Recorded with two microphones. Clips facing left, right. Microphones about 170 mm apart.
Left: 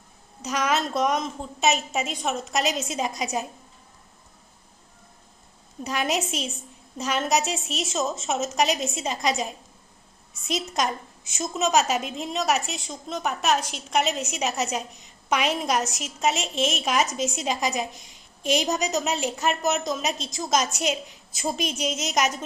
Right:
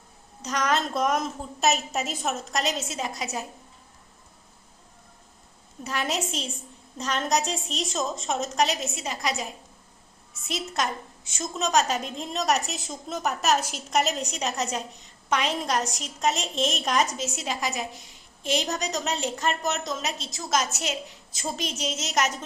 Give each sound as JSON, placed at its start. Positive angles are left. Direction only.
{"t": 0.4, "sound": "a woman's voice", "side_deg": 5}
{"t": 5.8, "sound": "a woman's voice", "side_deg": 15}
{"t": 9.0, "sound": "a woman's voice", "side_deg": 20}
{"t": 10.8, "sound": "a woman's voice", "side_deg": 15}
{"t": 17.2, "sound": "a woman's voice", "side_deg": 15}